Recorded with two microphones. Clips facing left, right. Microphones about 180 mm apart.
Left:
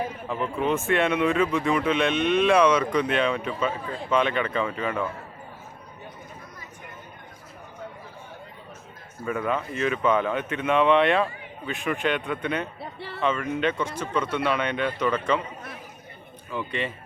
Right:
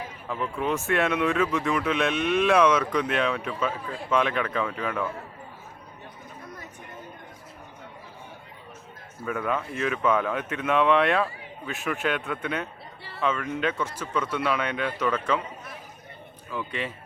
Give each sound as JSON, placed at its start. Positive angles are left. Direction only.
{"t": 0.3, "sound": "speech", "side_deg": 0}
{"t": 9.2, "sound": "speech", "side_deg": 0}
{"t": 12.8, "sound": "a sound", "side_deg": 60}
{"t": 13.2, "sound": "speech", "side_deg": 0}
{"t": 16.5, "sound": "speech", "side_deg": 0}